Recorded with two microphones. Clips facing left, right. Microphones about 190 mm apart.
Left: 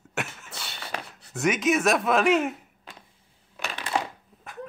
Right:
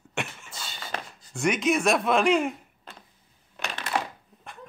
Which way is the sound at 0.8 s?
5° left (ahead or behind).